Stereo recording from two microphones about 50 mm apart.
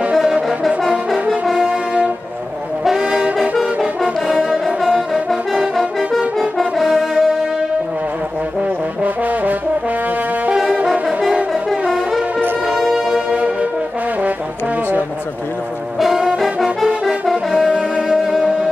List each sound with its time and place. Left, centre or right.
0.1 s brass instrument: centre
3.0 s brass instrument: right
4.6 s brass instrument: centre
9.0 s brass instrument: right
10.5 s brass instrument: centre
12.7 s music: centre
13.1 s music: right
16.0 s brass instrument: centre
18.0 s music: centre